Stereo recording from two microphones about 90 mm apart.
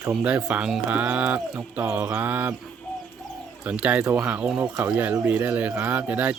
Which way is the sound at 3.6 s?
15° right (ahead or behind).